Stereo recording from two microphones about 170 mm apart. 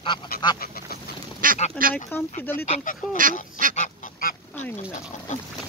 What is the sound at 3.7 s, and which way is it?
Goose, 50° left (ahead or behind).